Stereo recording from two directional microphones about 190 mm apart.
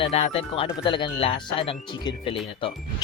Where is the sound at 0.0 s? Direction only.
35° left (ahead or behind).